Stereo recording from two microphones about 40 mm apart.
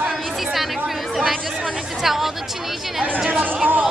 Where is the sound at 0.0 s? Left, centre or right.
Centre.